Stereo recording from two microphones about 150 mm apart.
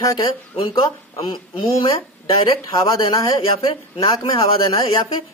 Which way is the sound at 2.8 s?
25° left (ahead or behind).